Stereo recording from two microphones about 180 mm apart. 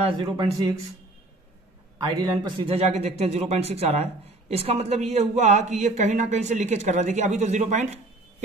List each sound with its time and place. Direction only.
0.0 s speech: 25° right (ahead or behind)
2.1 s speech: 25° right (ahead or behind); by 8.0 s 40° right (ahead or behind)